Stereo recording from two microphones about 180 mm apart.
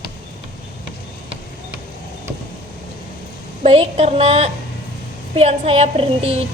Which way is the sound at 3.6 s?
35° right (ahead or behind).